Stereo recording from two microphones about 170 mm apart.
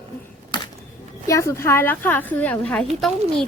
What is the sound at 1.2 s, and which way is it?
A woman's voice, 15° left (ahead or behind).